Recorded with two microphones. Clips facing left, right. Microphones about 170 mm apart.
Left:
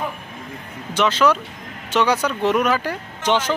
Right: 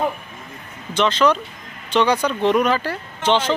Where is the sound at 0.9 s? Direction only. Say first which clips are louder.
Even; 10° left (ahead or behind).